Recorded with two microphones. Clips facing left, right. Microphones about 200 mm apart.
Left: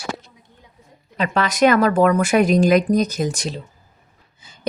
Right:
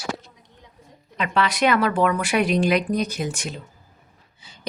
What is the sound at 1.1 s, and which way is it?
A woman's voice, 40° left (ahead or behind).